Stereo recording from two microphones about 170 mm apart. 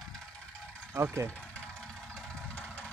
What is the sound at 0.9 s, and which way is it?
Speech, 15° right (ahead or behind).